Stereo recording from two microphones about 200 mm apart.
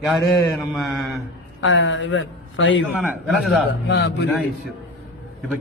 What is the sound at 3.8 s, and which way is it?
Speech, 60° left (ahead or behind).